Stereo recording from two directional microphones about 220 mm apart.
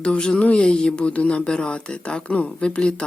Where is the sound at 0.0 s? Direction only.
5° left (ahead or behind).